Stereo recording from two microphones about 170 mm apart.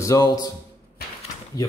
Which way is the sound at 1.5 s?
20° left (ahead or behind).